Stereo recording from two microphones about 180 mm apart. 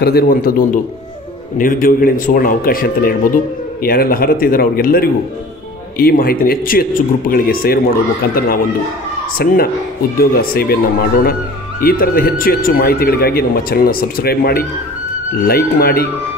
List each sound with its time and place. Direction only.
0.0 s a man's voice: 55° left (ahead or behind)
11.8 s speech: 55° left (ahead or behind)